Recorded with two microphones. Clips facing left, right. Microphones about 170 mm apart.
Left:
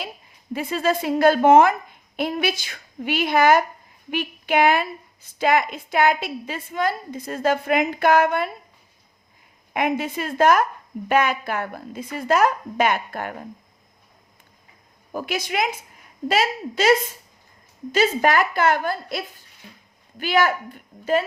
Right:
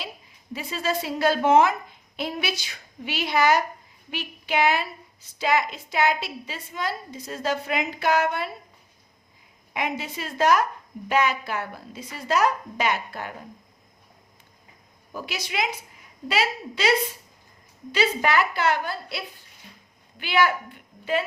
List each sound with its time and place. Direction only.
0.5 s a woman's voice: 55° left (ahead or behind)
9.7 s a woman's voice: 55° left (ahead or behind)
15.1 s a woman's voice: 50° left (ahead or behind)